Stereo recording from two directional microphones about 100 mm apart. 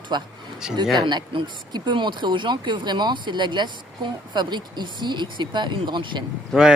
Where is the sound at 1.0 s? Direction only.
50° right (ahead or behind).